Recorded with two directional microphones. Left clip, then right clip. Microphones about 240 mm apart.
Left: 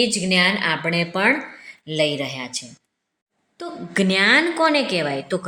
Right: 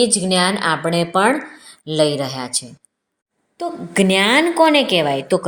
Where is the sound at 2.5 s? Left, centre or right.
Centre.